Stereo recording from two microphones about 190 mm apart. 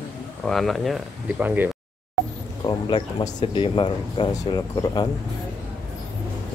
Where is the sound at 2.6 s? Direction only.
25° left (ahead or behind).